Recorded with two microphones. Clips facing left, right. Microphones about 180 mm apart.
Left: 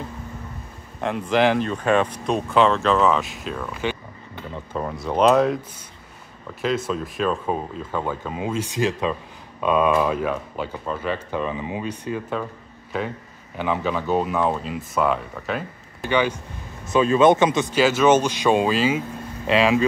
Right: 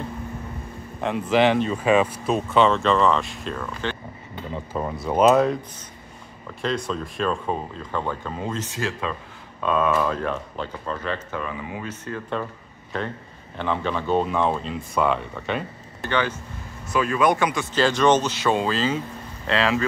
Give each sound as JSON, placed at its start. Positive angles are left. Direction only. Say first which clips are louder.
{"t": 1.0, "sound": "speech", "louder": "even", "side_deg": 0}
{"t": 6.9, "sound": "speech", "louder": "left 2 dB", "side_deg": 5}
{"t": 11.3, "sound": "speech", "louder": "left 4 dB", "side_deg": 20}
{"t": 13.6, "sound": "speech", "louder": "left 2 dB", "side_deg": 5}
{"t": 16.0, "sound": "speech", "louder": "left 3 dB", "side_deg": 15}
{"t": 17.7, "sound": "speech", "louder": "left 1 dB", "side_deg": 5}